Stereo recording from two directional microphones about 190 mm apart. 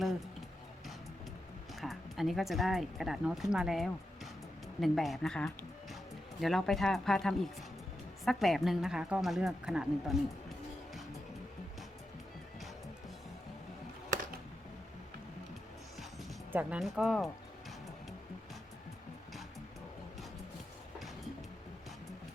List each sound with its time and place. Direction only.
1.8 s speech: centre (ahead or behind)
16.5 s speech: 10° right (ahead or behind)